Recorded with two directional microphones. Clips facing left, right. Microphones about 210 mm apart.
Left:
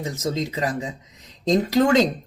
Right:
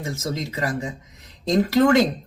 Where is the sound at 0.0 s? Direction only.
20° left (ahead or behind).